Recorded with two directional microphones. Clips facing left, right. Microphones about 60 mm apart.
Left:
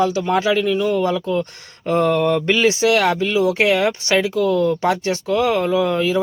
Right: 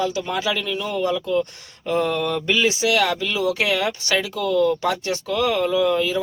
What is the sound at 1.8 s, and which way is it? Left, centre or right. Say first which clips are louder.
Speech: left 5 dB; left.